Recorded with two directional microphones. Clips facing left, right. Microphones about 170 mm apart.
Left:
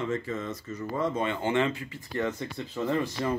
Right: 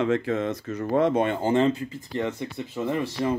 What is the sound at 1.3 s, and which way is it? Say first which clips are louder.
Speech: right 5 dB; 35° right (ahead or behind).